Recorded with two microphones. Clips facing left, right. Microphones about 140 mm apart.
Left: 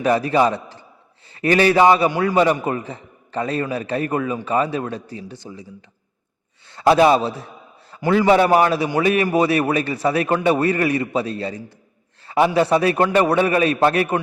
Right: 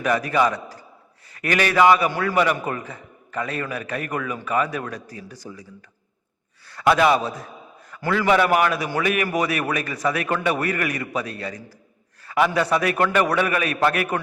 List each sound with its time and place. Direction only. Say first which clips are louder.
0.0 s a man's voice: left 4 dB; 30° left (ahead or behind)
6.7 s a man's voice: left 4 dB; 25° left (ahead or behind)
12.2 s a sound: left 3 dB; 30° left (ahead or behind)
12.5 s a man's voice: left 4 dB; 30° left (ahead or behind)